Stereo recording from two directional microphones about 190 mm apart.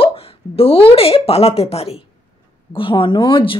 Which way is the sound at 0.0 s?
30° left (ahead or behind).